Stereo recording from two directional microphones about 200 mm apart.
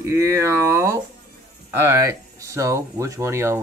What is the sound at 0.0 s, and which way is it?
Speech, 15° right (ahead or behind).